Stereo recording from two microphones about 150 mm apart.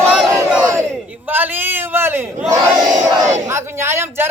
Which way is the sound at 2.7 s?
25° right (ahead or behind).